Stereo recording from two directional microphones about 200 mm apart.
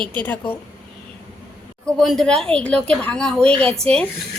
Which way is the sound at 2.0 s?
Centre (ahead or behind).